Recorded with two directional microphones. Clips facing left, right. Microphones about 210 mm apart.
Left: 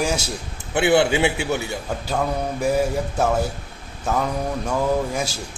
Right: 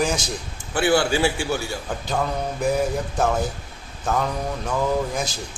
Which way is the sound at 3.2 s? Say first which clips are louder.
Left 1 dB; 10° left (ahead or behind).